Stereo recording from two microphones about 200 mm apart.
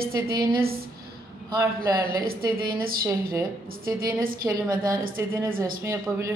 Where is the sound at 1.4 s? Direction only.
20° right (ahead or behind).